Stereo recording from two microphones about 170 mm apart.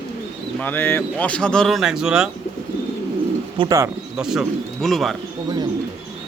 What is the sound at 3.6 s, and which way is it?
Speech, 20° right (ahead or behind).